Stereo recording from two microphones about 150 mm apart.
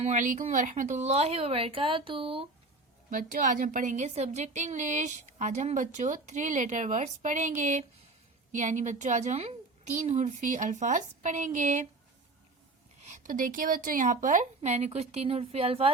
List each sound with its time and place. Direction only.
0.0 s a woman's voice: 55° right (ahead or behind); by 2.5 s 40° right (ahead or behind)
3.1 s a woman's voice: 65° right (ahead or behind)
13.0 s a woman's voice: 50° right (ahead or behind)